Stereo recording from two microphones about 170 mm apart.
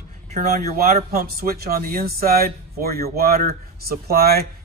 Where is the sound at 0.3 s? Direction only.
45° right (ahead or behind).